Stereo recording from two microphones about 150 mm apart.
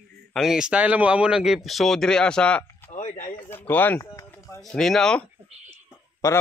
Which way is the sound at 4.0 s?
20° left (ahead or behind).